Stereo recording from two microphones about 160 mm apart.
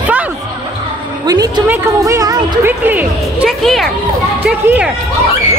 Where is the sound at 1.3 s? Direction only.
25° right (ahead or behind).